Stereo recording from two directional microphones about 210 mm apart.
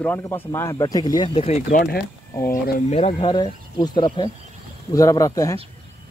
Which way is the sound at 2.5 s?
30° left (ahead or behind).